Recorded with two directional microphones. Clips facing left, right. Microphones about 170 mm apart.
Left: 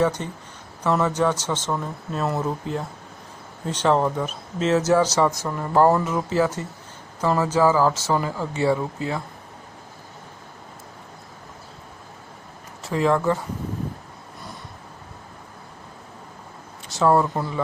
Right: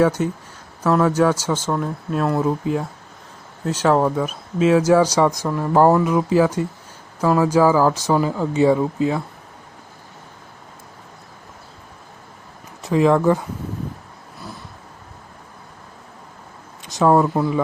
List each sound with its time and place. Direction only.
0.0 s speech: 10° right (ahead or behind)
3.7 s speech: 5° right (ahead or behind)
12.8 s speech: 15° right (ahead or behind)
16.9 s speech: 15° right (ahead or behind)